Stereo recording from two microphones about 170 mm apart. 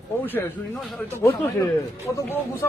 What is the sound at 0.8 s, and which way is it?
Speech, centre (ahead or behind).